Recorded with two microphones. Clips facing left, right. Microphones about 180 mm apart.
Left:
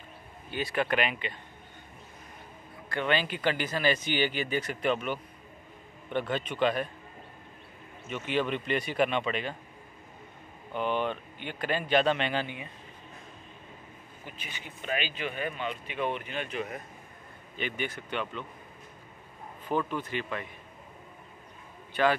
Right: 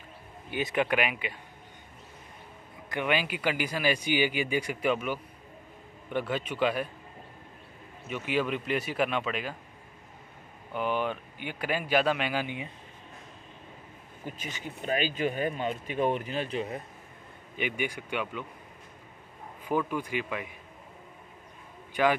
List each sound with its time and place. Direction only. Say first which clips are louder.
0.5 s speech: right 2 dB; 15° right (ahead or behind)
2.9 s speech: even; 10° right (ahead or behind)
8.1 s speech: even; 5° right (ahead or behind)
10.7 s speech: even; 5° right (ahead or behind)
14.2 s speech: right 7 dB; 45° right (ahead or behind)
17.6 s speech: right 2 dB; 10° right (ahead or behind)
19.6 s speech: right 1 dB; 10° right (ahead or behind)
22.0 s speech: even; 15° right (ahead or behind)